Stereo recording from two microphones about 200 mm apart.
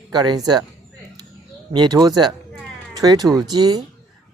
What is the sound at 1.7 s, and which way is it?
Speech, 20° right (ahead or behind).